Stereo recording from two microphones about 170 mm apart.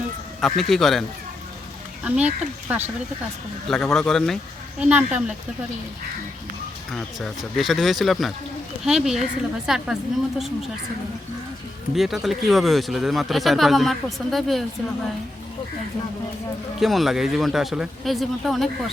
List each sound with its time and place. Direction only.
0.4 s speech: centre (ahead or behind)
2.0 s speech: 10° right (ahead or behind)
3.7 s speech: centre (ahead or behind)
6.9 s speech: centre (ahead or behind)
11.9 s speech: centre (ahead or behind)
16.8 s speech: centre (ahead or behind)